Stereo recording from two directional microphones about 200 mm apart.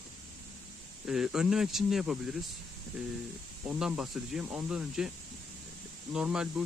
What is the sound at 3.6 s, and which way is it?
Speech, 5° right (ahead or behind).